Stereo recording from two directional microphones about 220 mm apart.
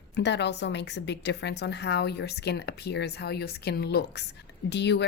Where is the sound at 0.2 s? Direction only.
50° left (ahead or behind).